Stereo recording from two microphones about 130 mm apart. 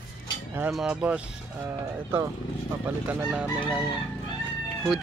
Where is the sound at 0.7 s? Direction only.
10° right (ahead or behind).